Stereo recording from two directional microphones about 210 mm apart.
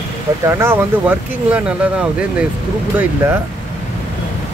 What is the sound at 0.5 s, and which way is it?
Speech, 10° right (ahead or behind).